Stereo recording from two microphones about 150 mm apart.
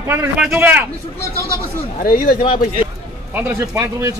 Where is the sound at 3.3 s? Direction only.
15° right (ahead or behind).